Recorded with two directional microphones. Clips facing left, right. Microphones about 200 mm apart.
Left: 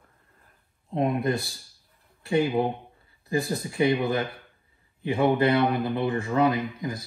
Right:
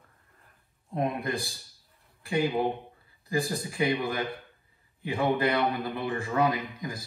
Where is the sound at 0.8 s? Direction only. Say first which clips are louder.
Left 5 dB; 25° left (ahead or behind).